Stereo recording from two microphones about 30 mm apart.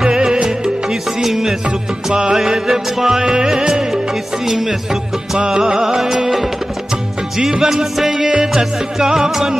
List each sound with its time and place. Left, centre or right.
0.0 s music: centre
7.6 s music: centre
8.1 s music: right